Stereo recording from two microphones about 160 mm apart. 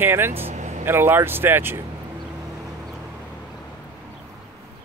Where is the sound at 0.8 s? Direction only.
15° right (ahead or behind).